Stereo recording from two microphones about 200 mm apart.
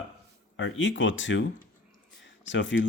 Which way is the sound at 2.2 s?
65° left (ahead or behind).